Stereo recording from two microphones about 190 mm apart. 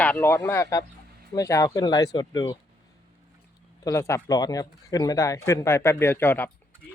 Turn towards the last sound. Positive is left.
turn(degrees=10)  # may be behind; listen again after turning